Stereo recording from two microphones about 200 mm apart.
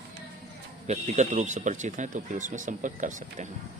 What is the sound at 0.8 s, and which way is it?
Speech, 35° right (ahead or behind).